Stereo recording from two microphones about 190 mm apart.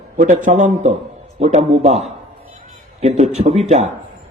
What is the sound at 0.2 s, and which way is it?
A man's voice, 40° right (ahead or behind).